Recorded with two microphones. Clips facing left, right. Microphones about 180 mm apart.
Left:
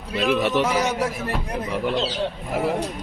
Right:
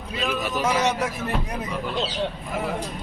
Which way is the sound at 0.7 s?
10° left (ahead or behind).